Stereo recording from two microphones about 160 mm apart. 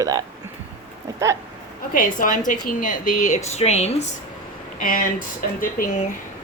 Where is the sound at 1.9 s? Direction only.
60° left (ahead or behind); by 4.1 s 40° left (ahead or behind).